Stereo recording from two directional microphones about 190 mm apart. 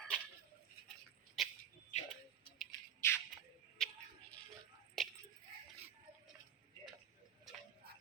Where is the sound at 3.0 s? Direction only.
15° left (ahead or behind).